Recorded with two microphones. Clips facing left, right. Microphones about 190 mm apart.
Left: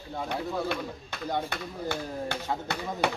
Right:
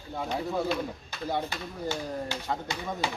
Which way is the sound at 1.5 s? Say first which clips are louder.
Left 1 dB; 60° left (ahead or behind).